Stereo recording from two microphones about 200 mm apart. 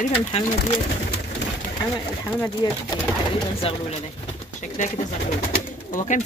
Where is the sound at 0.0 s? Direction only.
30° left (ahead or behind).